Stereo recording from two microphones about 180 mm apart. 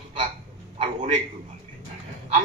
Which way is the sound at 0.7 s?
40° right (ahead or behind).